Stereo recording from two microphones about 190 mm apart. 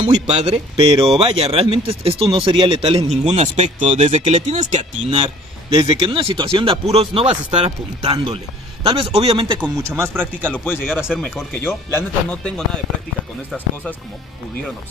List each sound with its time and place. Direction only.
0.0 s speech: 30° right (ahead or behind)
5.2 s a man's voice: 25° right (ahead or behind)
9.8 s speech: 10° right (ahead or behind)
10.5 s speech: 10° left (ahead or behind)
10.9 s speech: centre (ahead or behind)
11.5 s speech: 10° left (ahead or behind)